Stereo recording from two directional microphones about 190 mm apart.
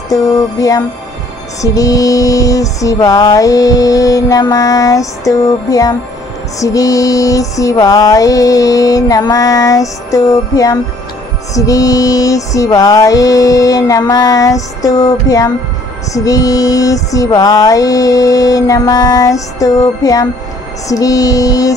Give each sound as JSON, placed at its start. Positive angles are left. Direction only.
{"t": 0.1, "sound": "music", "side_deg": 20}